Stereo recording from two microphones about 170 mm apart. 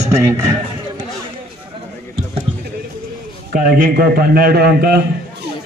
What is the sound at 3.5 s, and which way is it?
A man's voice, 55° right (ahead or behind).